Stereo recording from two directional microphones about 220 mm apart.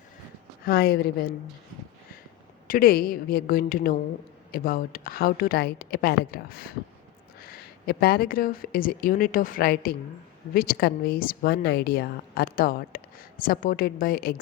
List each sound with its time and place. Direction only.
0.6 s a woman's voice: 45° left (ahead or behind)
2.6 s a woman's voice: 40° left (ahead or behind)